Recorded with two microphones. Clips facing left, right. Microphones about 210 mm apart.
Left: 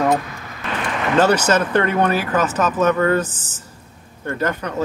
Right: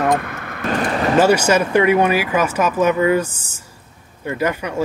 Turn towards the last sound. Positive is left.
turn(degrees=-10)  # may be behind; listen again after turning